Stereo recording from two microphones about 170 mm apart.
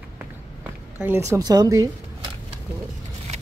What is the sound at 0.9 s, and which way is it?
Speech, 10° right (ahead or behind).